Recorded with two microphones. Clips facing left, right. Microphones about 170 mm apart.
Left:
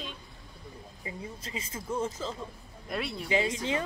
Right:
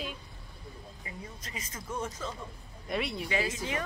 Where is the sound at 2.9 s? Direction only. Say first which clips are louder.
Right 1 dB; centre (ahead or behind).